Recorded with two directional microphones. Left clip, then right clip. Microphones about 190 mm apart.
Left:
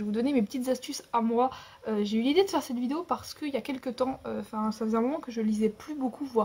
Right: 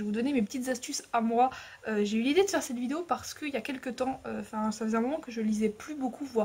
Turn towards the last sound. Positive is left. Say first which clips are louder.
# left 2 dB
turn(degrees=-10)  # may be behind; listen again after turning